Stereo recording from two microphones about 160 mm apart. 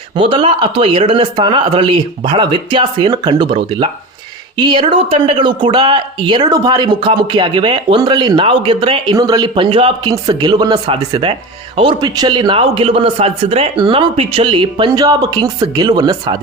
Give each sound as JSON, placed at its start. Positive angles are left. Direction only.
{"t": 0.2, "sound": "speech", "side_deg": -30}